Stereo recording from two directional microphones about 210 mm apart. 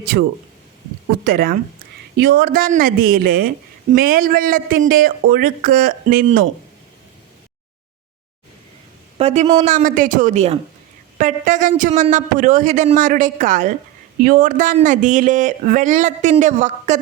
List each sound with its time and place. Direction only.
1.2 s speech: 45° right (ahead or behind)
9.1 s a woman's voice: 30° right (ahead or behind)